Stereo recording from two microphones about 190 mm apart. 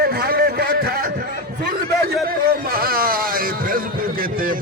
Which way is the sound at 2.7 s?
50° right (ahead or behind).